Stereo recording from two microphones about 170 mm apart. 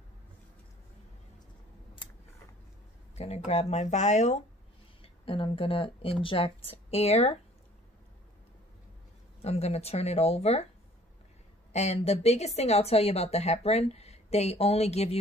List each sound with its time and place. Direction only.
3.2 s speech: 40° left (ahead or behind)
9.4 s speech: 40° left (ahead or behind)
11.7 s speech: 40° left (ahead or behind)